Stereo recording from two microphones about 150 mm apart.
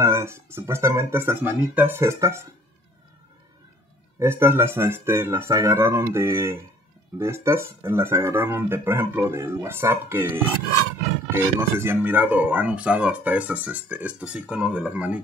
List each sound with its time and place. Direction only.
0.0 s speech: 20° right (ahead or behind)
4.2 s speech: 15° right (ahead or behind)